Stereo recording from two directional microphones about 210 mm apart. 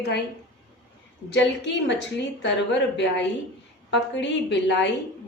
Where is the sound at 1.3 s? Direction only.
60° left (ahead or behind).